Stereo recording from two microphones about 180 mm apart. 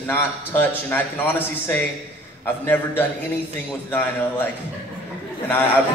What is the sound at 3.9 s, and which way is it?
Speech, 10° left (ahead or behind).